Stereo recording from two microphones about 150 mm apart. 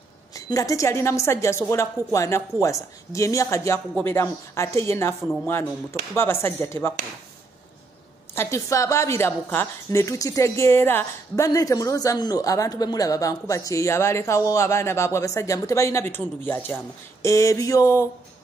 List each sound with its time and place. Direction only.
0.3 s a woman's voice: 20° left (ahead or behind)
8.4 s a woman's voice: 20° left (ahead or behind)